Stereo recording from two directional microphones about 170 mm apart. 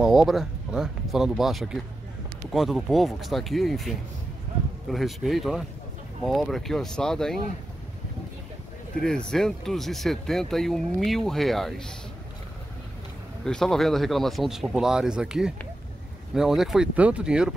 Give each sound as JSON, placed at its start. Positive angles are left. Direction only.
{"t": 0.0, "sound": "speech", "side_deg": 0}
{"t": 9.0, "sound": "speech", "side_deg": 5}
{"t": 13.5, "sound": "speech", "side_deg": 5}